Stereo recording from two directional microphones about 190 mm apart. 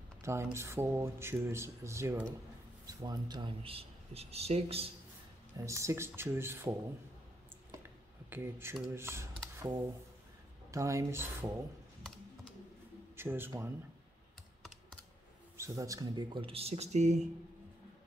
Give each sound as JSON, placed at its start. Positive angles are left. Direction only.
{"t": 0.2, "sound": "speech", "side_deg": -15}
{"t": 5.7, "sound": "speech", "side_deg": -15}
{"t": 8.3, "sound": "speech", "side_deg": -15}
{"t": 9.6, "sound": "a sound", "side_deg": -20}
{"t": 10.7, "sound": "speech", "side_deg": -15}
{"t": 13.1, "sound": "a man's voice", "side_deg": -10}
{"t": 15.5, "sound": "speech", "side_deg": -15}